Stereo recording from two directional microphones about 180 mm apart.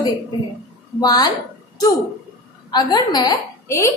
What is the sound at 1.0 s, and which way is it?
Speech, 20° left (ahead or behind).